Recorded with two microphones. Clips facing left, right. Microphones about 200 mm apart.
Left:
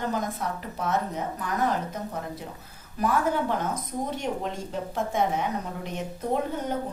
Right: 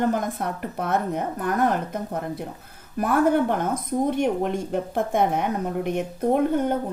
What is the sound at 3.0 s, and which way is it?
A woman's voice, 55° right (ahead or behind).